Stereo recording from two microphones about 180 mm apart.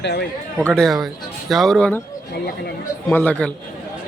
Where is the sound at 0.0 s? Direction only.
65° left (ahead or behind).